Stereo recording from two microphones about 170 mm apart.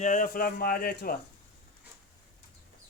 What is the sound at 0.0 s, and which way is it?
Speech, 50° left (ahead or behind).